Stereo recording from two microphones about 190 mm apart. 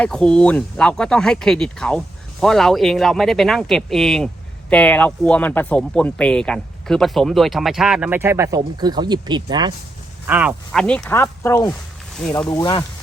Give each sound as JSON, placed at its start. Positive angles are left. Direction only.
{"t": 0.0, "sound": "speech", "side_deg": 5}
{"t": 10.2, "sound": "speech", "side_deg": -10}